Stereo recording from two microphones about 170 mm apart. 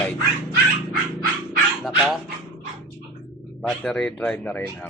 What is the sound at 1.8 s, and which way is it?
Dog, centre (ahead or behind).